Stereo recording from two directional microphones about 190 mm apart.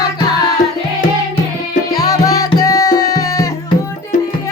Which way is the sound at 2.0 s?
20° left (ahead or behind).